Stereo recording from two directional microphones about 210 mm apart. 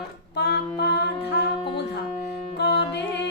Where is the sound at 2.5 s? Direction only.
55° left (ahead or behind).